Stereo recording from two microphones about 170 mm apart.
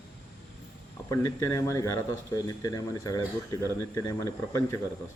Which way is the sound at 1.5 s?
15° left (ahead or behind).